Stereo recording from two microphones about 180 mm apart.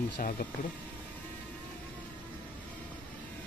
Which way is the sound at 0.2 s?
50° left (ahead or behind).